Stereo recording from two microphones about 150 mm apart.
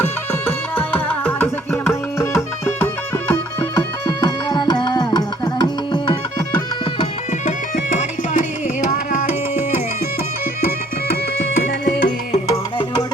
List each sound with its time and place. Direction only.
1.0 s music: 10° left (ahead or behind); by 6.1 s 30° left (ahead or behind)
7.4 s music: 55° left (ahead or behind)
11.6 s music: 90° left